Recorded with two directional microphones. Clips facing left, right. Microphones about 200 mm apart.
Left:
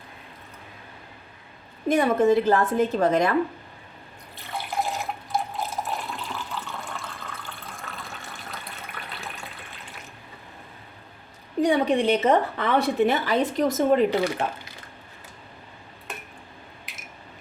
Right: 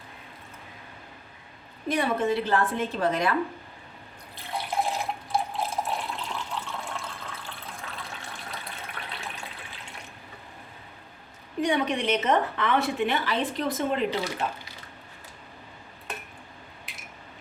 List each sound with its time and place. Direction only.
1.9 s a woman's voice: 45° left (ahead or behind)
4.4 s water: centre (ahead or behind)
11.6 s a woman's voice: 35° left (ahead or behind); by 14.4 s 55° left (ahead or behind)